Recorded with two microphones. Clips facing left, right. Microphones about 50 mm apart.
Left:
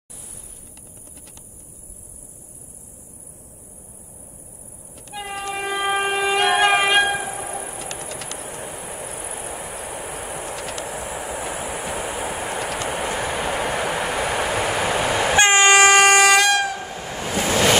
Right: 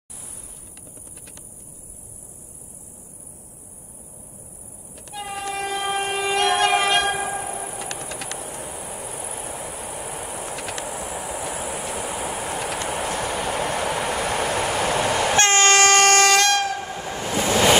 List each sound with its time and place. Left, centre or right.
5.1 s train: centre
8.5 s train: centre
10.5 s train: centre
11.0 s train: centre